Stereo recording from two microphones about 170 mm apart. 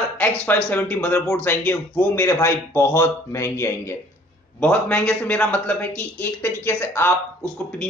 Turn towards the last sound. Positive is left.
turn(degrees=5)  # may be behind; listen again after turning